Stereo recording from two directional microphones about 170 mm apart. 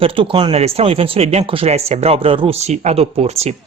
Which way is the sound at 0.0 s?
30° right (ahead or behind).